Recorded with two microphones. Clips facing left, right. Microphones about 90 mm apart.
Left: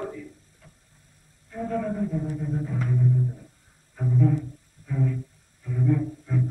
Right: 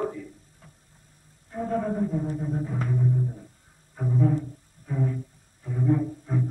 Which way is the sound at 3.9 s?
30° right (ahead or behind).